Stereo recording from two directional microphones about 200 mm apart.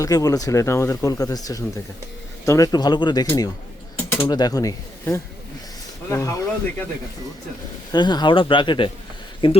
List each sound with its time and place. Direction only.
0.0 s speech: 15° left (ahead or behind)
7.9 s speech: 20° left (ahead or behind)